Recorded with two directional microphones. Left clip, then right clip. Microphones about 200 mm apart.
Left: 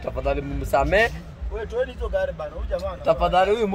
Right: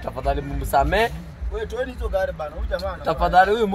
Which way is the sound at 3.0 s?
5° left (ahead or behind).